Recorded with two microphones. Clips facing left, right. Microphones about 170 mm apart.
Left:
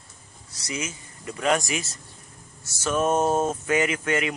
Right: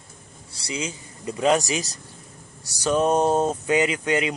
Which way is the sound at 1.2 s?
20° right (ahead or behind).